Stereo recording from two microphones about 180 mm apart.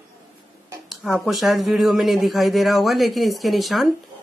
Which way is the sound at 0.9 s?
Centre (ahead or behind).